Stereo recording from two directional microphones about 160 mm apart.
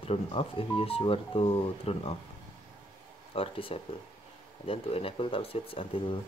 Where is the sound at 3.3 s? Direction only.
35° left (ahead or behind).